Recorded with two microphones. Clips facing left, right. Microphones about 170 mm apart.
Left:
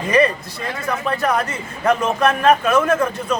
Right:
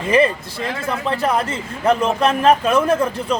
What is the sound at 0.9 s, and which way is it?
A man's voice, 25° right (ahead or behind).